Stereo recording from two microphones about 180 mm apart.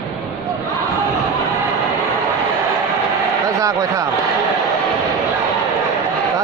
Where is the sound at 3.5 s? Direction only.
20° right (ahead or behind).